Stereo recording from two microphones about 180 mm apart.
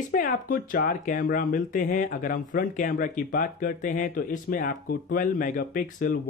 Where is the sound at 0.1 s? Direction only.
50° left (ahead or behind).